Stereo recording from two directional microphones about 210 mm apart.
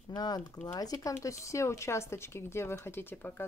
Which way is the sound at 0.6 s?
15° left (ahead or behind).